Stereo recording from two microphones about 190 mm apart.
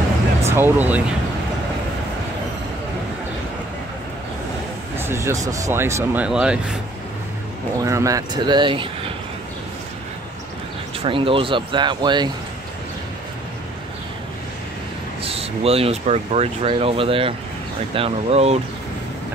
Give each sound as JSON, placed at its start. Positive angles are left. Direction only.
{"t": 0.4, "sound": "speech", "side_deg": -10}
{"t": 4.9, "sound": "speech", "side_deg": -15}
{"t": 7.8, "sound": "speech", "side_deg": -15}
{"t": 11.1, "sound": "speech", "side_deg": -30}
{"t": 15.2, "sound": "speech", "side_deg": -30}